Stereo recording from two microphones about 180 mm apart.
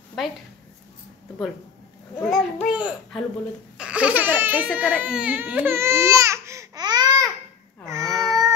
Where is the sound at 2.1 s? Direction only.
5° left (ahead or behind).